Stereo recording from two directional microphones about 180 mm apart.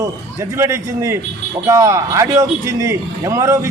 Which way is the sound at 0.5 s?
15° right (ahead or behind).